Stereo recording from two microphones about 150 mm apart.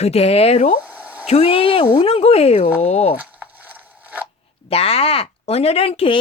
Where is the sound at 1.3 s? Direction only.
40° left (ahead or behind).